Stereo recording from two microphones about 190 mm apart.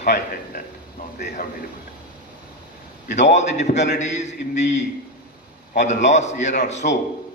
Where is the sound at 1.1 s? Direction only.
50° left (ahead or behind).